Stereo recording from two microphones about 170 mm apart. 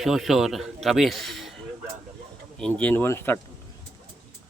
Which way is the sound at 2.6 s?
5° left (ahead or behind).